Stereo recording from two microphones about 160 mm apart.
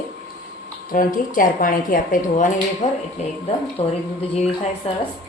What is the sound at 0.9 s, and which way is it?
A woman's voice, 60° left (ahead or behind).